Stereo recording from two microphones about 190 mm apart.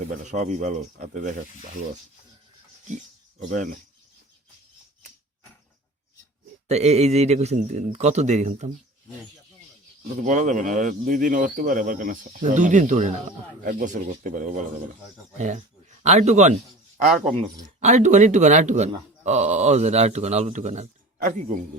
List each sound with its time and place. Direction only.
0.1 s speech: 40° right (ahead or behind)
3.5 s speech: 45° right (ahead or behind)
6.7 s speech: 35° right (ahead or behind)
10.2 s speech: 40° right (ahead or behind)
17.7 s speech: 40° right (ahead or behind)